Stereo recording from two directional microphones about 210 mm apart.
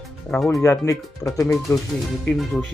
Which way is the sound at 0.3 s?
5° left (ahead or behind).